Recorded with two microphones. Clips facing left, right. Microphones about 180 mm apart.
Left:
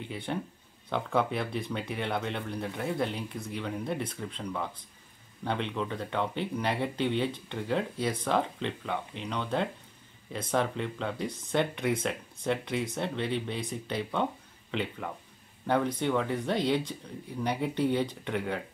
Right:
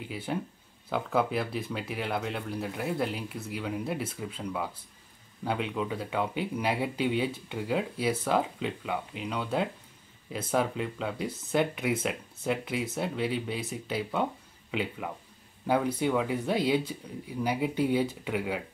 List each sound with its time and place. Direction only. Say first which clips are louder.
0.0 s speech: right 1 dB; 5° right (ahead or behind)